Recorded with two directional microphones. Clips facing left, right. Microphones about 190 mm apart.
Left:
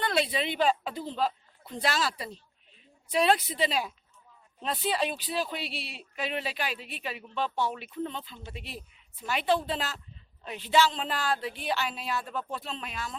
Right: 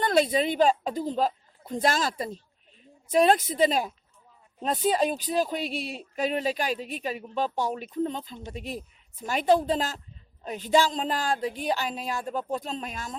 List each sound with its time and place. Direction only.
0.0 s a woman's voice: 45° right (ahead or behind)